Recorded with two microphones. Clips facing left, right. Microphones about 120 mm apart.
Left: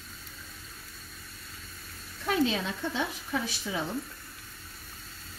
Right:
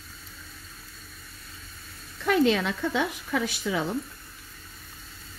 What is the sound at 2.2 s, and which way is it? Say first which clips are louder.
Speech: right 5 dB; 90° right.